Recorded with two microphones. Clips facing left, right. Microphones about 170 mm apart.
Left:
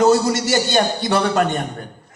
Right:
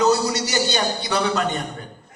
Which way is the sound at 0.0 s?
50° left (ahead or behind).